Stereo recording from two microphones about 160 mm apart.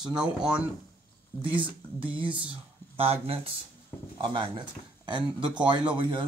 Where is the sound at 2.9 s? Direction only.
40° right (ahead or behind).